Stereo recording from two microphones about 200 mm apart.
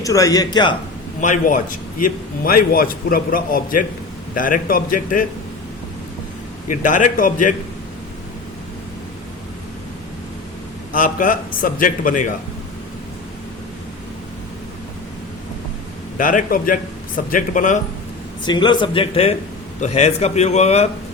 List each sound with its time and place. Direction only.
0.0 s speech: 15° left (ahead or behind)
1.2 s a man's voice: 40° left (ahead or behind)
6.7 s speech: 40° left (ahead or behind)
10.9 s a man's voice: 45° left (ahead or behind)
16.1 s speech: 40° left (ahead or behind)
18.4 s speech: 20° left (ahead or behind)